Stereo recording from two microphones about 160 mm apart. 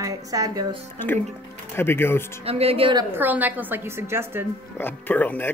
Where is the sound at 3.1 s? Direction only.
10° right (ahead or behind).